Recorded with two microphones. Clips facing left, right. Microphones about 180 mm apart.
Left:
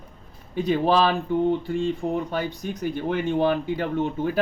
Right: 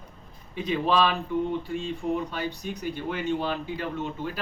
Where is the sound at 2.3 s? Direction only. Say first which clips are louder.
Left 4 dB; 50° left (ahead or behind).